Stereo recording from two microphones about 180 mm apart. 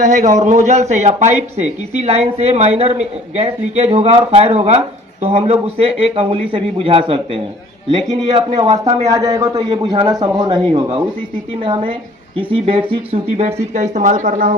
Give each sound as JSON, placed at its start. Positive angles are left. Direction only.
{"t": 0.0, "sound": "speech", "side_deg": -45}
{"t": 8.3, "sound": "a man's voice", "side_deg": -35}